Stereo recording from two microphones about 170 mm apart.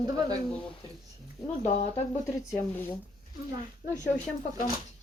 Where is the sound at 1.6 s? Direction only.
40° left (ahead or behind).